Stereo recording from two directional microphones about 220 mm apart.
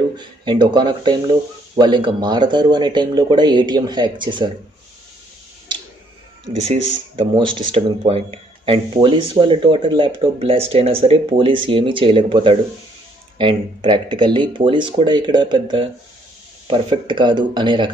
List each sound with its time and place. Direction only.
0.2 s speech: 20° right (ahead or behind)
7.2 s speech: 20° right (ahead or behind)